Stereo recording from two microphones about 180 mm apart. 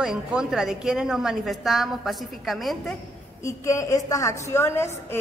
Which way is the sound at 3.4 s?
15° left (ahead or behind).